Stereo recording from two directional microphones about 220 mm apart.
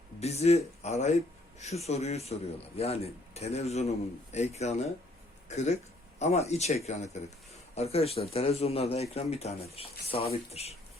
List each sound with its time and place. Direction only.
0.2 s speech: 30° left (ahead or behind)